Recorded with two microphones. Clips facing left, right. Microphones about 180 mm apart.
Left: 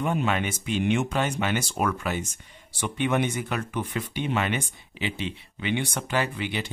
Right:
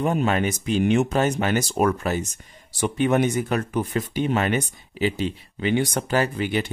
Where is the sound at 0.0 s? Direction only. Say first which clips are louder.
Right 4 dB; 40° right (ahead or behind).